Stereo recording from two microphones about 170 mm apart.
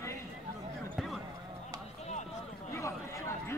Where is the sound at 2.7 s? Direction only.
15° left (ahead or behind).